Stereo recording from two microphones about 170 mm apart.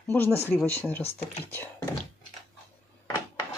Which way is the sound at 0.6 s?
10° left (ahead or behind).